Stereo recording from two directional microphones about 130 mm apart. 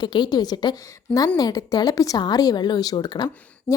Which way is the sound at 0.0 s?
35° left (ahead or behind).